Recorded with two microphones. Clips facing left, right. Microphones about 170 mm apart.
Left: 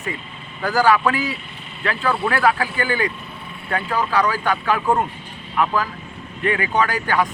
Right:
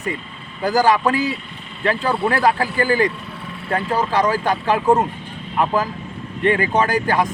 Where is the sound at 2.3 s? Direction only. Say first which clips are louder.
Right 1 dB; 35° right (ahead or behind).